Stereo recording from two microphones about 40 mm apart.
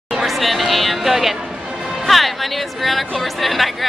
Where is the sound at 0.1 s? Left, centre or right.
Centre.